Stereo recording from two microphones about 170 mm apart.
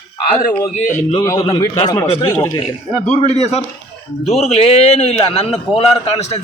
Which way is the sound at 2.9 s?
40° left (ahead or behind).